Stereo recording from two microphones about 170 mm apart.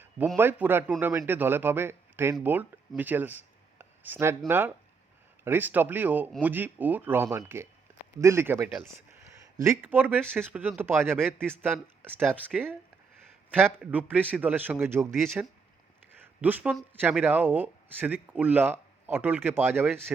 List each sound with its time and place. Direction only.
0.3 s speech: 15° right (ahead or behind)
16.1 s a sound: 10° right (ahead or behind)
16.9 s speech: 10° right (ahead or behind)